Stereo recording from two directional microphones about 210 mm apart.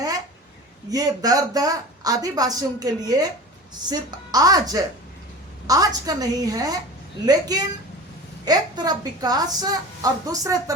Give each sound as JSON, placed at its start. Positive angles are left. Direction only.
{"t": 0.9, "sound": "a woman's voice", "side_deg": -15}